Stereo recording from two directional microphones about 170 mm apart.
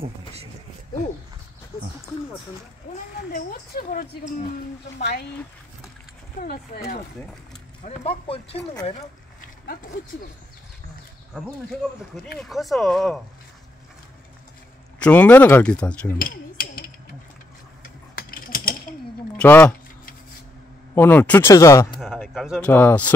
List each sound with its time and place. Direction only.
0.0 s speech: 35° right (ahead or behind)
3.3 s speech: 60° left (ahead or behind)
6.4 s speech: 65° left (ahead or behind)
7.8 s speech: 35° left (ahead or behind)
9.4 s a sound: 50° left (ahead or behind)
12.4 s speech: centre (ahead or behind)
15.0 s speech: 10° left (ahead or behind)
16.2 s a sound: 60° left (ahead or behind)
17.8 s coin: 55° left (ahead or behind)
19.3 s speech: 10° left (ahead or behind)
20.9 s speech: 10° left (ahead or behind)
22.0 s speech: centre (ahead or behind)
22.7 s speech: 15° left (ahead or behind)